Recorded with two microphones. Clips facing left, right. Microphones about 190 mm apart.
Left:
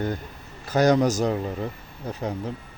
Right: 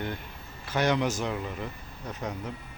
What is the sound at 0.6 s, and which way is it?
Speech, 40° left (ahead or behind).